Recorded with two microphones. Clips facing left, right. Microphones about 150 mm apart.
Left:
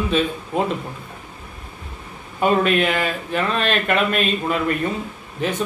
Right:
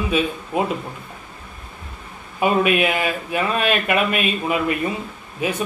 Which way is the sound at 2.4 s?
10° right (ahead or behind).